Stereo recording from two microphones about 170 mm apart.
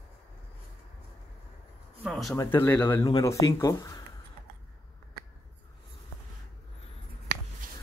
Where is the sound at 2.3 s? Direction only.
15° left (ahead or behind).